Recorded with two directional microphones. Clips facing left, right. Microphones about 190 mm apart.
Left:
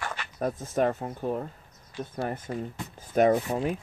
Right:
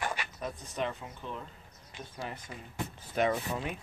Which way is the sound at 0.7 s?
50° left (ahead or behind).